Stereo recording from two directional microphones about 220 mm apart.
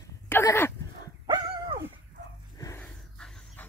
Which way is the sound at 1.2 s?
20° right (ahead or behind).